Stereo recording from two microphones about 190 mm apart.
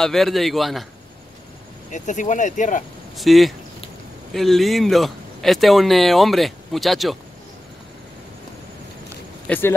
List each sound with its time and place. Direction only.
0.0 s speech: centre (ahead or behind)
1.9 s speech: 40° left (ahead or behind)
3.2 s speech: centre (ahead or behind)
9.5 s speech: 10° left (ahead or behind)